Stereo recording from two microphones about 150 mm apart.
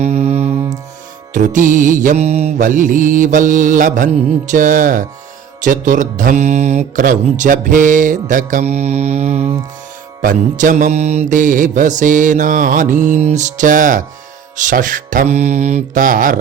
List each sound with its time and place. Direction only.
0.0 s music: 45° right (ahead or behind)
1.3 s speech: 60° right (ahead or behind)
10.2 s speech: 60° right (ahead or behind)